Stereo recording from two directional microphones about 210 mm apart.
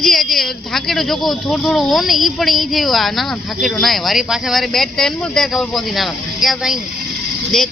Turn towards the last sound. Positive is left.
turn(degrees=0)  # may be behind; listen again after turning